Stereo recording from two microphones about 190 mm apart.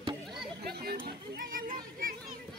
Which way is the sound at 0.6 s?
55° right (ahead or behind).